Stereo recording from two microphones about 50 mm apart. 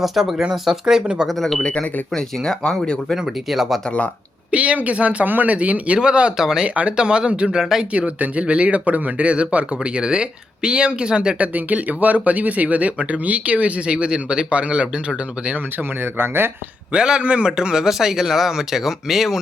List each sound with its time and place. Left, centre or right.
0.0 s a man's voice: centre
1.3 s speech: centre
1.6 s speech: left
2.1 s speech: centre
3.2 s speech: centre
3.8 s speech: left
4.5 s a man's voice: right; by 6.7 s centre
6.7 s a man's voice: right
7.9 s speech: right
11.5 s speech: right
16.0 s speech: right
16.9 s a man's voice: centre